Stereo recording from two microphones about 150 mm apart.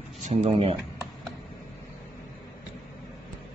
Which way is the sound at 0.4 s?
40° right (ahead or behind).